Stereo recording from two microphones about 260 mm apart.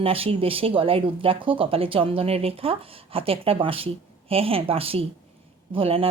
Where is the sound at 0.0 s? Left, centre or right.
Right.